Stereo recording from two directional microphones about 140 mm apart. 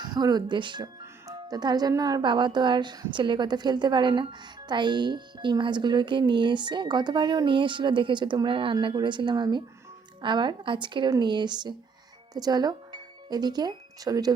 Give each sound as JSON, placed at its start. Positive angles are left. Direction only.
{"t": 0.0, "sound": "speech", "side_deg": -30}